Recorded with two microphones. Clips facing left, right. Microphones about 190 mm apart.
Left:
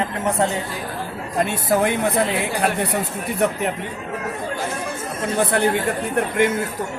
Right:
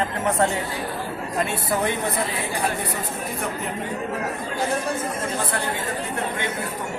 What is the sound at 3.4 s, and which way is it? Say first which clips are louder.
Speech: left 11 dB; 70° left (ahead or behind).